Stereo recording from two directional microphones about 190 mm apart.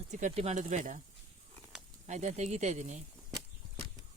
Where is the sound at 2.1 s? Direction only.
40° right (ahead or behind).